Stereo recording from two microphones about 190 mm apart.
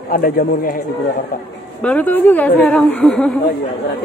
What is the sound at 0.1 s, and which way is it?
Speech, 50° left (ahead or behind).